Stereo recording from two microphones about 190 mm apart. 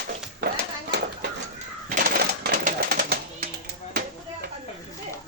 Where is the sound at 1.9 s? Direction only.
50° right (ahead or behind).